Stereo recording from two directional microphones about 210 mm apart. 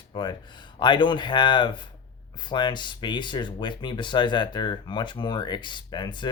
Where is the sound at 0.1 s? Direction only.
20° left (ahead or behind).